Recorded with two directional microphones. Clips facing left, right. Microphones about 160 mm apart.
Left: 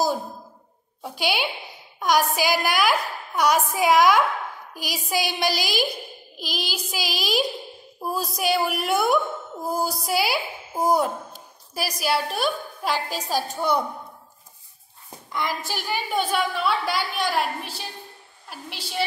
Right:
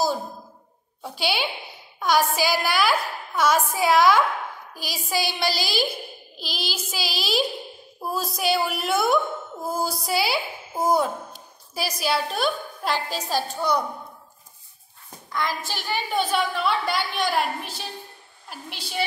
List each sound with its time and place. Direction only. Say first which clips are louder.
1.0 s a woman's voice: left 1 dB; 15° left (ahead or behind)
15.3 s a woman's voice: even; 15° left (ahead or behind)